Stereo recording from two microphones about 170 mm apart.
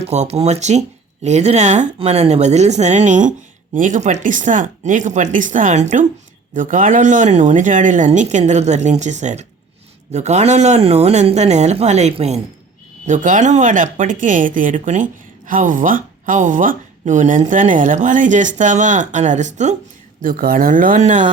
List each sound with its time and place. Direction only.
0.0 s a woman's voice: 40° right (ahead or behind)
20.2 s a woman's voice: 55° right (ahead or behind)